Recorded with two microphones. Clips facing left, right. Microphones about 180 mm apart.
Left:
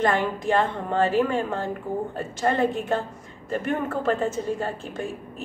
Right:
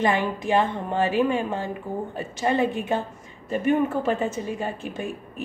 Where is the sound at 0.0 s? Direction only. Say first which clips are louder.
Even; 20° right (ahead or behind).